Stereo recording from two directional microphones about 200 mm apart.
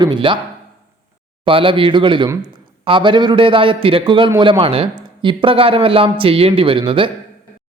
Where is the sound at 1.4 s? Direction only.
25° right (ahead or behind).